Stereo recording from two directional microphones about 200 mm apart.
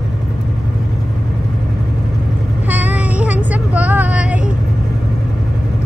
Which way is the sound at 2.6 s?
10° right (ahead or behind).